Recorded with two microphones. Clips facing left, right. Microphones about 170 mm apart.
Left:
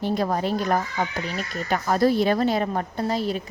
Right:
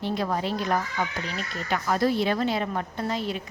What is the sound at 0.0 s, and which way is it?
Speech, 40° left (ahead or behind).